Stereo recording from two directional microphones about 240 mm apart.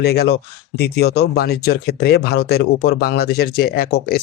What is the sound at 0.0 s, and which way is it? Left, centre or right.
Speech, left.